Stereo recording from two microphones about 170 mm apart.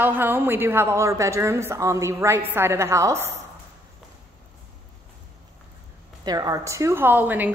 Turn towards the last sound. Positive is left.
turn(degrees=-10)  # may be behind; listen again after turning